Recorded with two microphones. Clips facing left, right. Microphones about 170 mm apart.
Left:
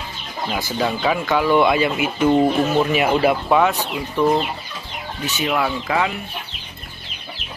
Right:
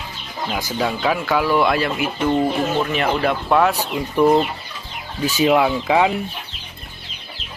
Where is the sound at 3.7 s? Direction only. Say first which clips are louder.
Right 2 dB; 10° right (ahead or behind).